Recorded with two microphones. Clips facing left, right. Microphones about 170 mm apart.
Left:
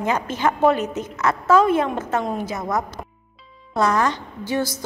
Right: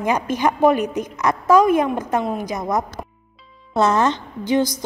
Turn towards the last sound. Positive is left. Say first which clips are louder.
# right 5 dB
turn(degrees=-15)  # may be behind; listen again after turning